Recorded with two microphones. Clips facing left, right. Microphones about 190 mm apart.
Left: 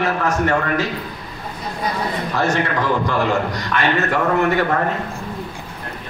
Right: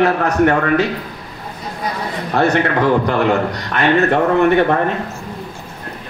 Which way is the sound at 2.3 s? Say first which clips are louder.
Right 6 dB; 60° right (ahead or behind).